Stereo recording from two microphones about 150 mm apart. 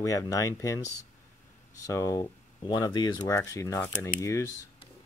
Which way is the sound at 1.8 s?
20° left (ahead or behind).